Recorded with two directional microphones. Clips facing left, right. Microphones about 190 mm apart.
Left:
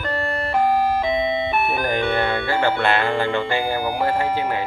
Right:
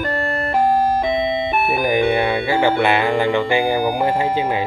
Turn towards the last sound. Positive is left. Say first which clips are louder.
# right 5 dB
turn(degrees=-15)  # may be behind; listen again after turning